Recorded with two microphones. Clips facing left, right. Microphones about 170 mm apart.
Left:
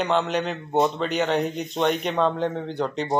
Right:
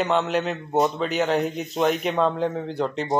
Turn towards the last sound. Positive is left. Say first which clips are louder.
# right 1 dB
turn(degrees=0)  # may be behind; listen again after turning